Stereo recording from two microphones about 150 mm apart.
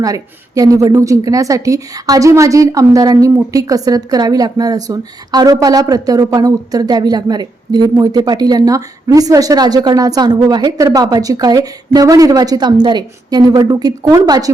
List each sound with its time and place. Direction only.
0.0 s a woman's voice: 25° right (ahead or behind)